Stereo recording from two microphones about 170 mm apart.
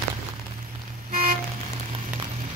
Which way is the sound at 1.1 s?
55° right (ahead or behind).